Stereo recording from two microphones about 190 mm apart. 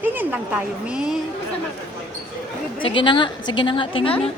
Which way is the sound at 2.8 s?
25° left (ahead or behind).